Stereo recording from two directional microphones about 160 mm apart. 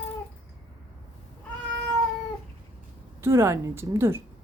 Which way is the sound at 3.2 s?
15° right (ahead or behind).